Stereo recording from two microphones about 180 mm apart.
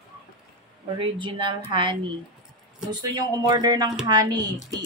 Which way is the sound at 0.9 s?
25° right (ahead or behind).